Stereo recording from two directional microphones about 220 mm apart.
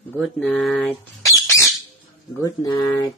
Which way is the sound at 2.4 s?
15° left (ahead or behind).